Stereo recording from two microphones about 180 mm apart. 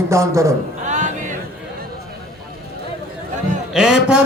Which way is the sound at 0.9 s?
45° right (ahead or behind).